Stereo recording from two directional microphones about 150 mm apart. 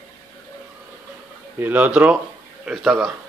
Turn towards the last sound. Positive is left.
turn(degrees=0)  # may be behind; listen again after turning